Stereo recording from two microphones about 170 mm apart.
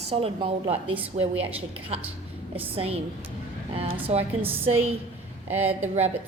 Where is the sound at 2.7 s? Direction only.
35° right (ahead or behind).